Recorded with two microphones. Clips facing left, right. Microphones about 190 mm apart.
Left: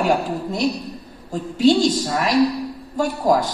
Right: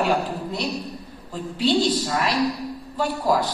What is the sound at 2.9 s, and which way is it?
Speech, 45° left (ahead or behind).